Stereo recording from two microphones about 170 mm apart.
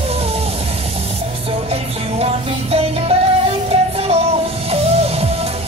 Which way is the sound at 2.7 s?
35° right (ahead or behind).